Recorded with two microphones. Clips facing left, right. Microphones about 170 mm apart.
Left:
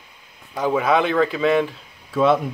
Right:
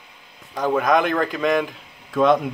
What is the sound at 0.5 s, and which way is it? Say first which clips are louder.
Speech: even; 5° left (ahead or behind).